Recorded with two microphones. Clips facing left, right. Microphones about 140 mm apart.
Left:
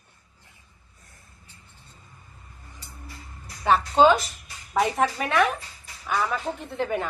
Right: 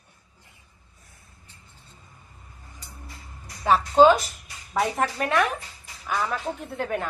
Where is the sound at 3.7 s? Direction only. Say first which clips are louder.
Right 2 dB; centre (ahead or behind).